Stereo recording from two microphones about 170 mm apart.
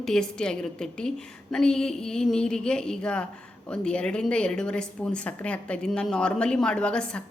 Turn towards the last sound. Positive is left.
turn(degrees=5)  # may be behind; listen again after turning